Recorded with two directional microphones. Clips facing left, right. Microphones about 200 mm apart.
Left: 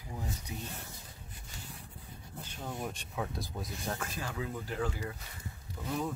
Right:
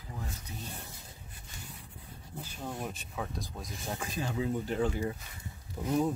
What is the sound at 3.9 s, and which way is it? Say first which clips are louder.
Speech: right 7 dB; 15° right (ahead or behind).